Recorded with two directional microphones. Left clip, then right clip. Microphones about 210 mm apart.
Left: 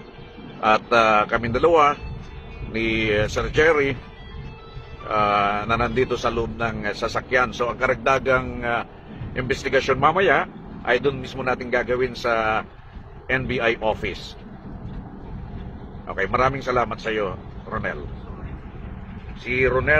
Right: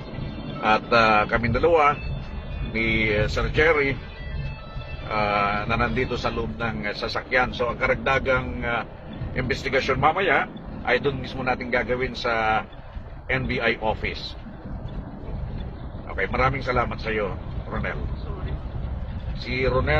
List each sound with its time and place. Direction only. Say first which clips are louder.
0.7 s a man's voice: left 2 dB; 40° left (ahead or behind)
5.0 s a man's voice: left 3 dB; 40° left (ahead or behind)
16.2 s a man's voice: left 2 dB; 45° left (ahead or behind)
19.4 s a man's voice: left 4 dB; 30° left (ahead or behind)